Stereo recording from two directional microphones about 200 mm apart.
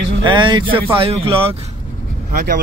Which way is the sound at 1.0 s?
25° right (ahead or behind).